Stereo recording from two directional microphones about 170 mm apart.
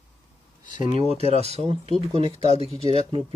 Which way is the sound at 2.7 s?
35° left (ahead or behind).